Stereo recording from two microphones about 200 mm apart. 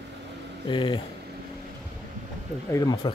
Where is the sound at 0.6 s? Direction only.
25° left (ahead or behind).